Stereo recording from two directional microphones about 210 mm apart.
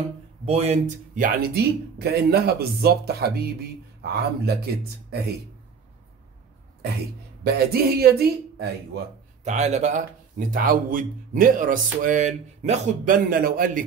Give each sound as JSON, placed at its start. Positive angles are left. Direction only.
{"t": 0.5, "sound": "speech", "side_deg": -30}
{"t": 7.4, "sound": "speech", "side_deg": -50}
{"t": 9.4, "sound": "a man's voice", "side_deg": -35}